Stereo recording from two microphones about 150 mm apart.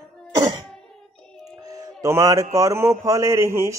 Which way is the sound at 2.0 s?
20° right (ahead or behind).